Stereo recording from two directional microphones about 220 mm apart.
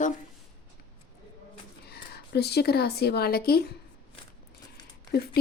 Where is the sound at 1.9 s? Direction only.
50° left (ahead or behind).